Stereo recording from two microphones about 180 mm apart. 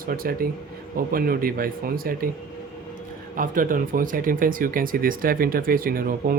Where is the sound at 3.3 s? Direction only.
50° right (ahead or behind).